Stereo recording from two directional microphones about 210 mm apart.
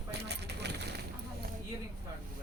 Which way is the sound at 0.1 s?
55° right (ahead or behind).